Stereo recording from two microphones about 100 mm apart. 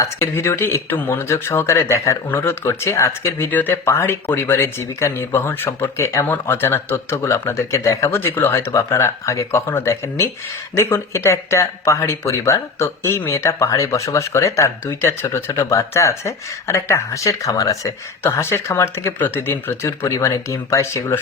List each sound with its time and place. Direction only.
0.0 s speech: 25° left (ahead or behind)